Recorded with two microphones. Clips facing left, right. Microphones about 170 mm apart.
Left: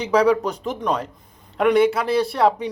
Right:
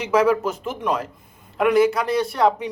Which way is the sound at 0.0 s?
35° left (ahead or behind).